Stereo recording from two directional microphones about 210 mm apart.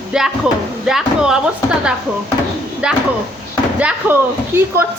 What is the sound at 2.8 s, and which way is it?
Speech, 5° right (ahead or behind).